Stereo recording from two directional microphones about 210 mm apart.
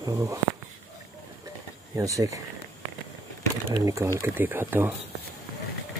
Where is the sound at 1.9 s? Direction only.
15° right (ahead or behind).